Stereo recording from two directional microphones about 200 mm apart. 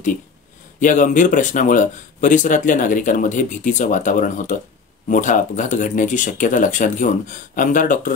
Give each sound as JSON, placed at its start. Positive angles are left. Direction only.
{"t": 0.7, "sound": "speech", "side_deg": 40}